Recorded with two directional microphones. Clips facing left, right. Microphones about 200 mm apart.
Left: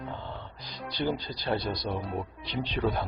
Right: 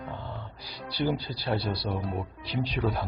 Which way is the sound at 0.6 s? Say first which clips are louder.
Right 2 dB; 10° right (ahead or behind).